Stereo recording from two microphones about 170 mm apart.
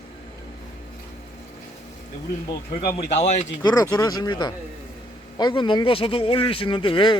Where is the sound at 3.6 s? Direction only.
20° left (ahead or behind).